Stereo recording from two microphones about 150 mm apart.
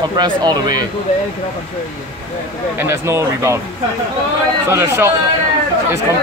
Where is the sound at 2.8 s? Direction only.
15° right (ahead or behind).